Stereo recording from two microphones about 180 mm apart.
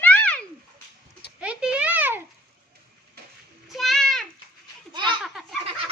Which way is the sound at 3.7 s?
Centre (ahead or behind).